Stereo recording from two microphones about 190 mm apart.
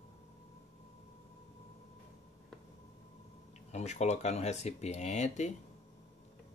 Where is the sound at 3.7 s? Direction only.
35° left (ahead or behind).